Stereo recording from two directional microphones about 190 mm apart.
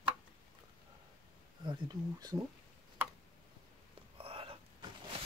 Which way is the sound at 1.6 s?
20° right (ahead or behind).